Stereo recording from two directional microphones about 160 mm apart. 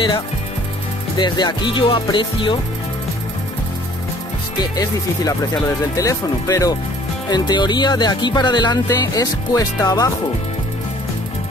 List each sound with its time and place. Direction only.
1.1 s speech: 25° left (ahead or behind)
4.7 s speech: 20° left (ahead or behind)